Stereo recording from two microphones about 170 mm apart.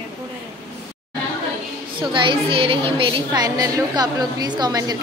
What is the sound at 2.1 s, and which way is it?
A woman's voice, 30° right (ahead or behind).